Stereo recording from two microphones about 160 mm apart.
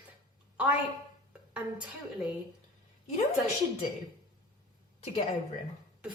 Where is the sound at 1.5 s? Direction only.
5° right (ahead or behind).